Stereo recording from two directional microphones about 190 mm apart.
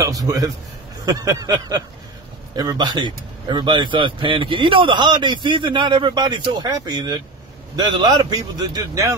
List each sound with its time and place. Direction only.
0.0 s speech: 20° right (ahead or behind)